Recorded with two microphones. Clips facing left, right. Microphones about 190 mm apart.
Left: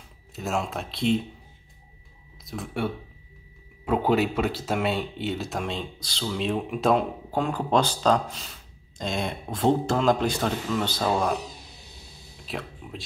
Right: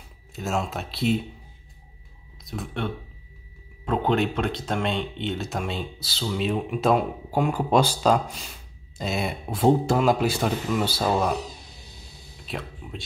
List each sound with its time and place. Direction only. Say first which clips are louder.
0.4 s speech: right 1 dB; centre (ahead or behind)
2.4 s speech: left 1 dB; centre (ahead or behind)
12.4 s speech: even; centre (ahead or behind)